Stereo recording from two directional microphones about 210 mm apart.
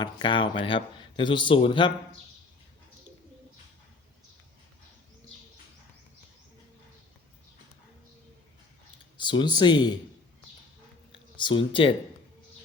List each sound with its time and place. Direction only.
0.0 s a man's voice: 20° left (ahead or behind)
9.1 s speech: 20° left (ahead or behind)
11.1 s speech: 25° left (ahead or behind)